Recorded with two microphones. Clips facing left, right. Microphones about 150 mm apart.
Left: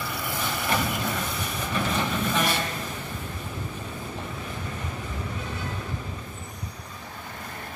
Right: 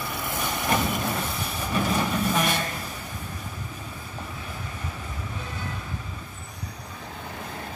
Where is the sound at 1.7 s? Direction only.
10° right (ahead or behind).